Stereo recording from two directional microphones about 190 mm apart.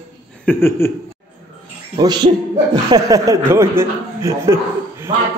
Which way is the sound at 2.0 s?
25° right (ahead or behind).